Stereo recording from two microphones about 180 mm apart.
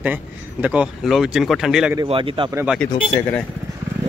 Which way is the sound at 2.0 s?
30° right (ahead or behind).